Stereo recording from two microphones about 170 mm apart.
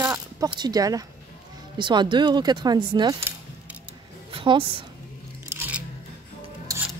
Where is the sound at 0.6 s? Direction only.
20° right (ahead or behind).